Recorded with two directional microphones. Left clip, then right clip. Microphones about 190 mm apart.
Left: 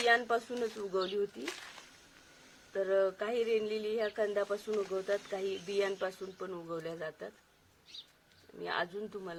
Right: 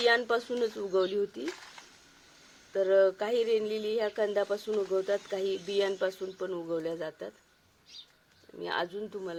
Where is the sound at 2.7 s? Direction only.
45° right (ahead or behind).